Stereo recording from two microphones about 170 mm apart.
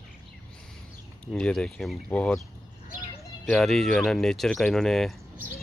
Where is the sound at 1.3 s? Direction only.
5° left (ahead or behind).